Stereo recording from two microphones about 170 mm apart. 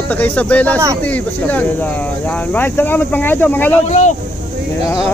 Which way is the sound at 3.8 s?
40° left (ahead or behind).